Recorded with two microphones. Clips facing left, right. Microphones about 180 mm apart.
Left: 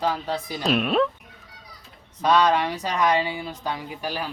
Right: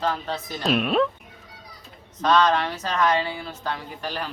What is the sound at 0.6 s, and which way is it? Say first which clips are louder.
Speech: even; centre (ahead or behind).